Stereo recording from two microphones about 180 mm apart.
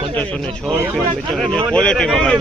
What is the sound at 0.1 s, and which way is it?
Speech, 10° left (ahead or behind).